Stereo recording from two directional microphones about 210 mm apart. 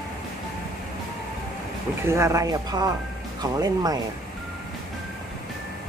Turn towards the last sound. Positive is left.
turn(degrees=-15)  # may be behind; listen again after turning